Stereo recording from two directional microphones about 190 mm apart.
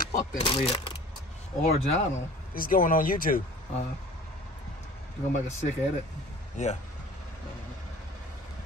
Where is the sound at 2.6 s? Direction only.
45° left (ahead or behind).